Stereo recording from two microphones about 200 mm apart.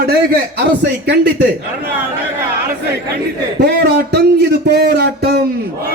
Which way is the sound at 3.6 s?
55° right (ahead or behind).